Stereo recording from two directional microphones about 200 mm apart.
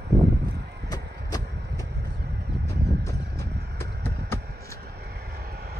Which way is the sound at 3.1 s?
55° right (ahead or behind).